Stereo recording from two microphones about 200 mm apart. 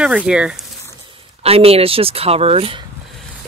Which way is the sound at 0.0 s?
5° right (ahead or behind).